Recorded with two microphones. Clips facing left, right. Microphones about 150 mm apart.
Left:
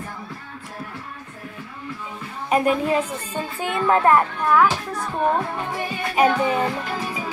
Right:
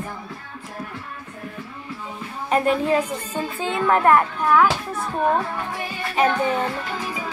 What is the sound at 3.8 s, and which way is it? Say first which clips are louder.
Speech: even; 20° left (ahead or behind).